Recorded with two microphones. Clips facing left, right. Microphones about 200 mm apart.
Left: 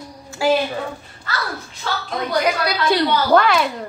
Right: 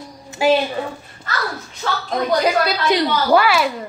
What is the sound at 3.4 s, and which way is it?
Speech, 5° right (ahead or behind).